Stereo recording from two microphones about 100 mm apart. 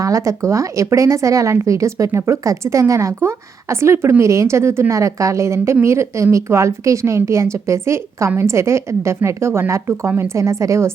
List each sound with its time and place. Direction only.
0.0 s a woman's voice: 30° right (ahead or behind)